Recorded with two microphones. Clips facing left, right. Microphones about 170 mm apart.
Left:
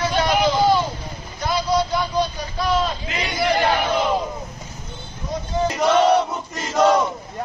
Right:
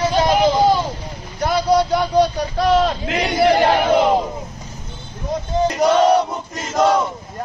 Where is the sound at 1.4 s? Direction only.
55° right (ahead or behind).